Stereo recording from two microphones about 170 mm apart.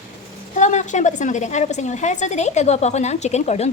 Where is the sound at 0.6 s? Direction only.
45° left (ahead or behind).